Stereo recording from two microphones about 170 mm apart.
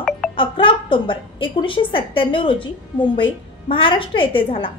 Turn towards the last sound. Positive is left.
turn(degrees=30)  # may be behind; listen again after turning